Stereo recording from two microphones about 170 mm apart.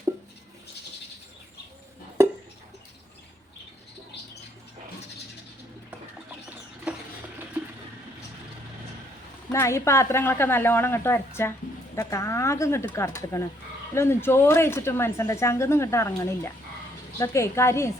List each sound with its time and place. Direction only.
9.5 s speech: 15° left (ahead or behind)